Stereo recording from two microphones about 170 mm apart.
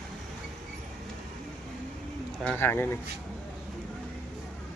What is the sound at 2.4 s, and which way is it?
Speech, 10° left (ahead or behind).